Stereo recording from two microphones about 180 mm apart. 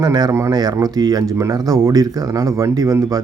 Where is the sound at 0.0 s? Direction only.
20° right (ahead or behind).